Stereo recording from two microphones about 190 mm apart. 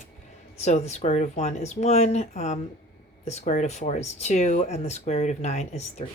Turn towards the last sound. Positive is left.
turn(degrees=35)  # may be behind; listen again after turning